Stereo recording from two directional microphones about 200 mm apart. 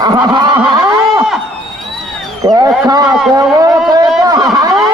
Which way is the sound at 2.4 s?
20° right (ahead or behind).